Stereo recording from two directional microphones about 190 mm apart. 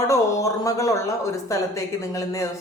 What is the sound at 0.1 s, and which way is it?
Speech, 15° left (ahead or behind).